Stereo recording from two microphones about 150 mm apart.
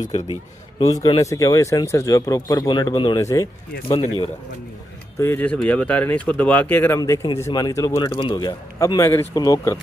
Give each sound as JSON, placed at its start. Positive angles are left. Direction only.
{"t": 0.7, "sound": "speech", "side_deg": 25}
{"t": 3.2, "sound": "speech", "side_deg": 20}
{"t": 5.2, "sound": "speech", "side_deg": 10}